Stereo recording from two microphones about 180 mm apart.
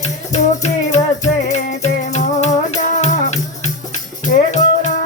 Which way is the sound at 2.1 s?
40° left (ahead or behind).